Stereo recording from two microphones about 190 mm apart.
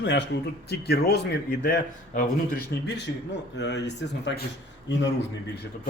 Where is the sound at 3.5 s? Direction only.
65° left (ahead or behind).